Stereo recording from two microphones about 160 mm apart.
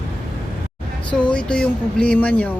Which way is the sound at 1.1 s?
5° left (ahead or behind).